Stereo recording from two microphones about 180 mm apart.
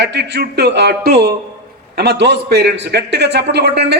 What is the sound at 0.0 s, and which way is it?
A man's voice, 65° right (ahead or behind).